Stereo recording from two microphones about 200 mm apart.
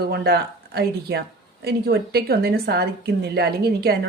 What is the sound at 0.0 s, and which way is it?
Speech, 55° right (ahead or behind).